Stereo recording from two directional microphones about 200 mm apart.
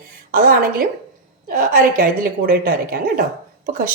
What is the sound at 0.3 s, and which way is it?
Speech, 45° right (ahead or behind).